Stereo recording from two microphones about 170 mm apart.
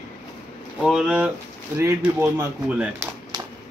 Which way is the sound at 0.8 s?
5° right (ahead or behind).